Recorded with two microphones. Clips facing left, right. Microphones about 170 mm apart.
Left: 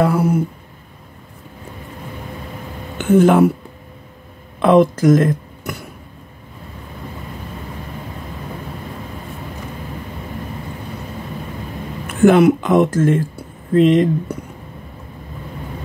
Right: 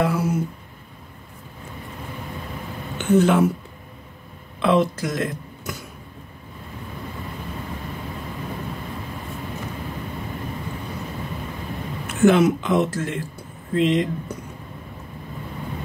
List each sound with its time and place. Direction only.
0.0 s speech: 55° left (ahead or behind)
3.0 s speech: 50° left (ahead or behind)
4.6 s speech: 50° left (ahead or behind)
12.1 s speech: 55° left (ahead or behind)